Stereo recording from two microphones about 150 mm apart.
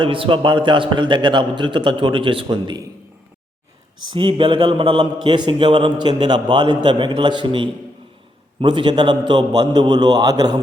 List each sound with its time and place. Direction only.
0.0 s a man's voice: 35° right (ahead or behind)
4.1 s a man's voice: 35° right (ahead or behind)